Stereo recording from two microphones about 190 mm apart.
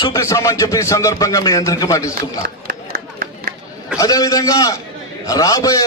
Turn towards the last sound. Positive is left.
turn(degrees=20)  # may be behind; listen again after turning